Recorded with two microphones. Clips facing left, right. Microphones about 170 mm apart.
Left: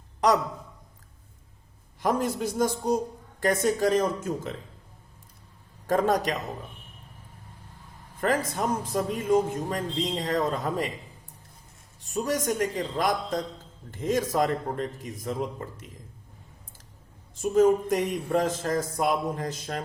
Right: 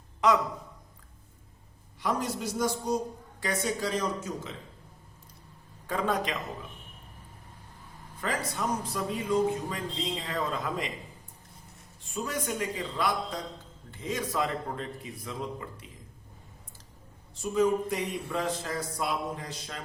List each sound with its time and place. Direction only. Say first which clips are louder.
2.0 s speech: left 5 dB; 50° left (ahead or behind)
5.9 s a man's voice: left 6 dB; 45° left (ahead or behind)
8.2 s speech: left 6 dB; 50° left (ahead or behind)
12.0 s speech: left 6 dB; 40° left (ahead or behind)
17.3 s speech: left 5 dB; 50° left (ahead or behind)